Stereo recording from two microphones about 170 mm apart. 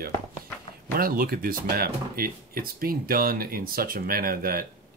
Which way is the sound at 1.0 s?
60° right (ahead or behind).